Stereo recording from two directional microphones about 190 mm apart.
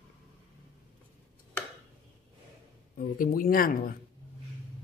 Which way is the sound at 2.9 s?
45° left (ahead or behind).